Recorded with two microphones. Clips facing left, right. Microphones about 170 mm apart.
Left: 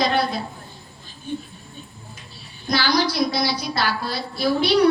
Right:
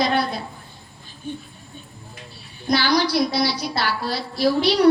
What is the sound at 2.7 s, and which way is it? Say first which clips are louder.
A woman's voice: right 2 dB; 65° right (ahead or behind).